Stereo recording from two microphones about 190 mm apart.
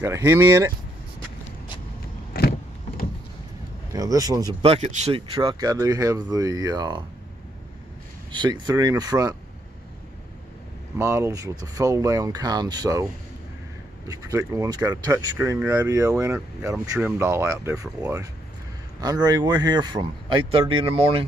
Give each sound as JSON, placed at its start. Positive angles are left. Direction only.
{"t": 0.0, "sound": "speech", "side_deg": -15}
{"t": 2.3, "sound": "a sound", "side_deg": 55}
{"t": 3.9, "sound": "speech", "side_deg": -20}
{"t": 4.6, "sound": "speech", "side_deg": -30}
{"t": 8.3, "sound": "speech", "side_deg": -25}
{"t": 11.0, "sound": "speech", "side_deg": -15}
{"t": 14.0, "sound": "speech", "side_deg": -20}